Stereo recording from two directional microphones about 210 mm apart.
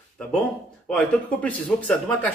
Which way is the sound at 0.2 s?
5° left (ahead or behind).